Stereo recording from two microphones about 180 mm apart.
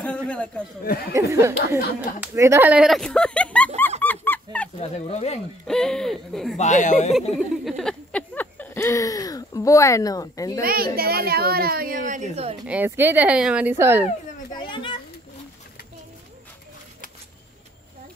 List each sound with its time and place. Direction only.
0.0 s a man's voice: 5° left (ahead or behind)
1.1 s speech: 15° right (ahead or behind)
2.0 s speech: 5° right (ahead or behind)
4.0 s dog: 10° left (ahead or behind)
4.7 s speech: 35° left (ahead or behind)
5.7 s speech: 5° left (ahead or behind)
6.6 s speech: 40° left (ahead or behind)
7.3 s a sound: centre (ahead or behind); by 10.6 s 20° left (ahead or behind)
10.6 s a woman's voice: 55° right (ahead or behind); by 12.5 s 40° right (ahead or behind)
12.6 s speech: 10° right (ahead or behind)
14.5 s children playing: 25° left (ahead or behind)